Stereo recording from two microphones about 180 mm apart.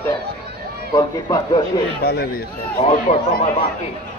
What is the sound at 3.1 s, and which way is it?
Speech, 35° left (ahead or behind).